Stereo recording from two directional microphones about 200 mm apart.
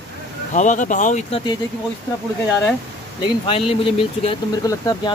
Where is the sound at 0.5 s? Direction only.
40° left (ahead or behind).